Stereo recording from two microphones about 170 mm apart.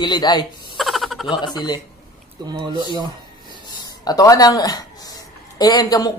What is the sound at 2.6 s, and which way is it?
Speech, 25° right (ahead or behind).